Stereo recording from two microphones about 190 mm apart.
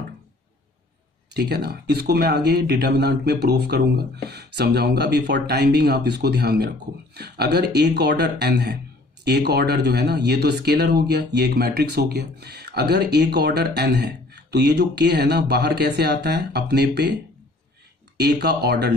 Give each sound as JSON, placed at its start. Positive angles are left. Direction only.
{"t": 1.3, "sound": "speech", "side_deg": -60}
{"t": 18.1, "sound": "speech", "side_deg": -60}